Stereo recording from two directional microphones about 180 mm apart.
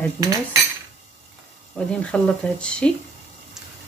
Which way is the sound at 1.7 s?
5° left (ahead or behind).